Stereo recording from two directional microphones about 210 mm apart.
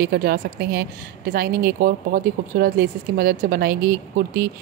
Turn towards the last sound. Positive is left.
turn(degrees=-45)  # may be behind; listen again after turning